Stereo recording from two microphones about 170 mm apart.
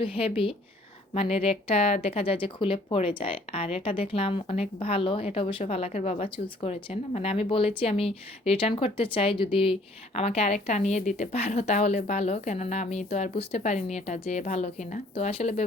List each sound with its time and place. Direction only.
0.0 s speech: 35° left (ahead or behind)
15.1 s speech: 35° left (ahead or behind)